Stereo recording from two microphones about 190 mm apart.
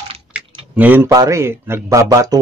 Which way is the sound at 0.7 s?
10° right (ahead or behind).